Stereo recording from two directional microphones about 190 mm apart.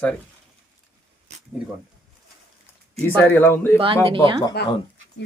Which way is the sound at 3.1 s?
10° left (ahead or behind).